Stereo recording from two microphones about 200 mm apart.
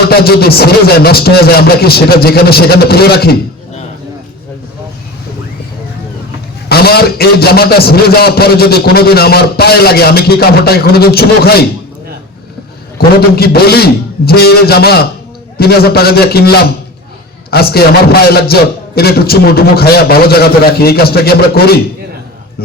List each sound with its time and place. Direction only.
0.1 s a man's voice: 50° left (ahead or behind)
6.7 s a man's voice: 50° left (ahead or behind)
13.0 s a man's voice: 50° left (ahead or behind)